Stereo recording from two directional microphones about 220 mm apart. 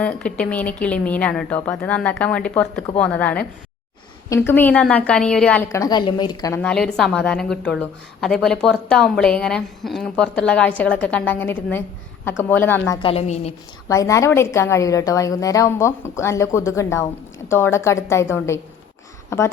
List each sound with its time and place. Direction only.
0.0 s a woman's voice: 5° left (ahead or behind)
13.0 s a woman's voice: 25° left (ahead or behind)
13.8 s a woman's voice: 15° left (ahead or behind)